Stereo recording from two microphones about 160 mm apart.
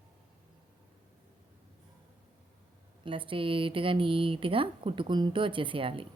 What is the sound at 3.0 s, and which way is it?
A woman's voice, 30° right (ahead or behind).